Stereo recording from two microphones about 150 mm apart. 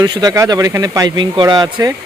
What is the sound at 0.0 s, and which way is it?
Speech, 25° right (ahead or behind).